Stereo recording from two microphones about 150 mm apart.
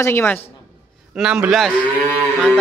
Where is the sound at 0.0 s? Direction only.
15° left (ahead or behind).